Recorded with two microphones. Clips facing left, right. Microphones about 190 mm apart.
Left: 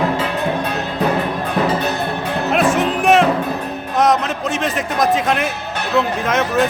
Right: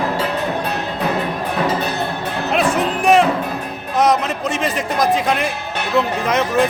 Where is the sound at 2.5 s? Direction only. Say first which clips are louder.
Left 1 dB; centre (ahead or behind).